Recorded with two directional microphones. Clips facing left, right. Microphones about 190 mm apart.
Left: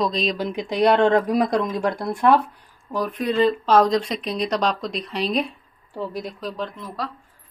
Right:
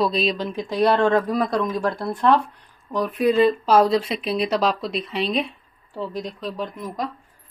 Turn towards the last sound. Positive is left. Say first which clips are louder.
# right 2 dB
turn(degrees=-20)  # may be behind; listen again after turning